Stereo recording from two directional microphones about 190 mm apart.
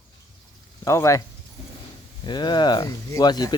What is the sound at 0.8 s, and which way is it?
Speech, 15° left (ahead or behind).